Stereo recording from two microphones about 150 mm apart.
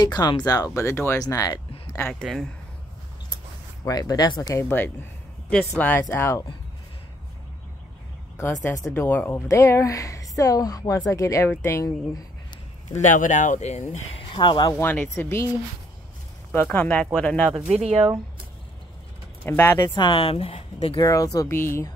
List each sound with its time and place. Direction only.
0.0 s a woman's voice: 25° left (ahead or behind)
2.2 s speech: centre (ahead or behind)
3.8 s a woman's voice: 25° left (ahead or behind)
8.6 s a woman's voice: 20° left (ahead or behind)
13.0 s speech: 55° left (ahead or behind)
14.3 s speech: 35° left (ahead or behind)
14.7 s speech: 15° left (ahead or behind)
16.5 s speech: 10° left (ahead or behind)
17.5 s speech: 5° right (ahead or behind)
17.7 s speech: 45° right (ahead or behind)
19.4 s speech: 15° left (ahead or behind)
19.9 s speech: 35° left (ahead or behind)
21.0 s a woman's voice: 25° left (ahead or behind)